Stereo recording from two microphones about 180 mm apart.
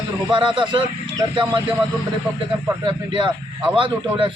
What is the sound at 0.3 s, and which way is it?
A man's voice, 25° right (ahead or behind).